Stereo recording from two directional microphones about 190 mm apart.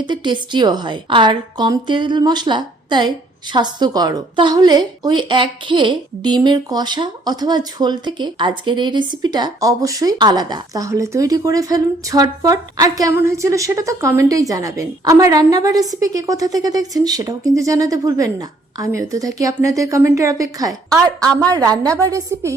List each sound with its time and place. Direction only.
0.0 s a woman's voice: 25° right (ahead or behind)